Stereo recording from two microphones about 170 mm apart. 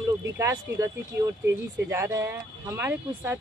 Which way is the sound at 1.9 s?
15° right (ahead or behind).